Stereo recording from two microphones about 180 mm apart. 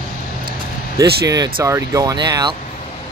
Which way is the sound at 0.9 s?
20° right (ahead or behind).